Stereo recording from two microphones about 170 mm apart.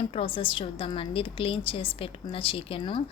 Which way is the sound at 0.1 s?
35° left (ahead or behind).